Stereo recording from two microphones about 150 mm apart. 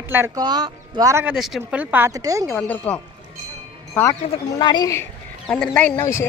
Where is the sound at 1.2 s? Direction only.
Centre (ahead or behind); by 2.4 s 20° right (ahead or behind).